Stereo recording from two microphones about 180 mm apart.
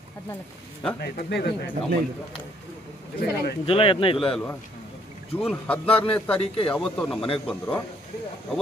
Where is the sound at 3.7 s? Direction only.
30° left (ahead or behind).